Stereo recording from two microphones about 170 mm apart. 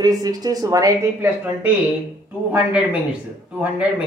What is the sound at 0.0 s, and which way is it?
Speech, 20° right (ahead or behind).